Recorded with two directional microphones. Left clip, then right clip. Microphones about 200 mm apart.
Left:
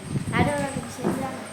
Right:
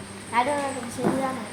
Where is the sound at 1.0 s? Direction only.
35° right (ahead or behind).